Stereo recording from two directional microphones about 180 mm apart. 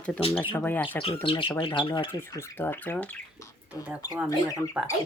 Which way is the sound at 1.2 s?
30° left (ahead or behind).